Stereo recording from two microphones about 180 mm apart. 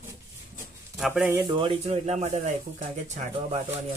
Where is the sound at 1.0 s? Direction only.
5° right (ahead or behind).